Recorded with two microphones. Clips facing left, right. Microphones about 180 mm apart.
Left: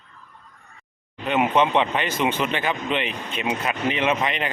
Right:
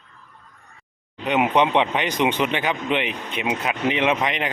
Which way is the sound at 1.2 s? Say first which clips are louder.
Right 1 dB; 15° right (ahead or behind).